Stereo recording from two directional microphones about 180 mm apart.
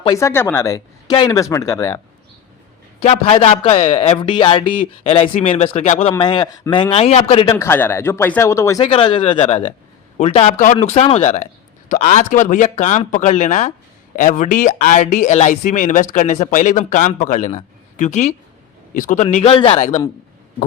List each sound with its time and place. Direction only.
0.0 s speech: 20° left (ahead or behind)
3.0 s speech: 35° left (ahead or behind)
6.1 s speech: 25° left (ahead or behind)
7.5 s speech: 15° left (ahead or behind); by 20.0 s 35° left (ahead or behind)